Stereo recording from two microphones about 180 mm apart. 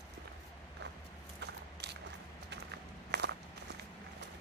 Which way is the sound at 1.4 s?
70° right (ahead or behind).